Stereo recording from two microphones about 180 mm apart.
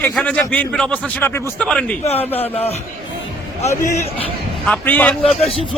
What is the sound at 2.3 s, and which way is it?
A man's voice, 35° left (ahead or behind).